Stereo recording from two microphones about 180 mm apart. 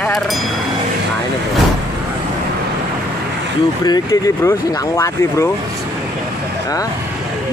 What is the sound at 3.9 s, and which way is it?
Speech, 20° left (ahead or behind).